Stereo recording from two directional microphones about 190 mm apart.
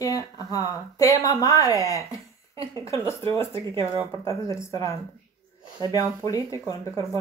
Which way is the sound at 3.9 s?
20° right (ahead or behind).